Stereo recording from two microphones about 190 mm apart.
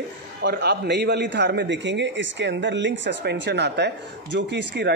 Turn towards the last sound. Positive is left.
turn(degrees=-65)  # may be behind; listen again after turning